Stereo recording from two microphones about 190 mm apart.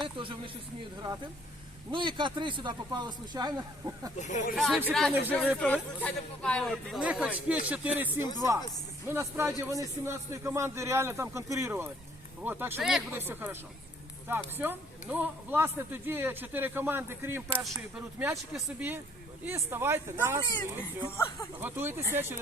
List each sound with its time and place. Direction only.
0.2 s speech: 25° right (ahead or behind)
1.9 s speech: 25° right (ahead or behind)
4.2 s speech: 40° left (ahead or behind)
4.5 s speech: centre (ahead or behind)
17.6 s speech: centre (ahead or behind)
21.6 s speech: 10° right (ahead or behind)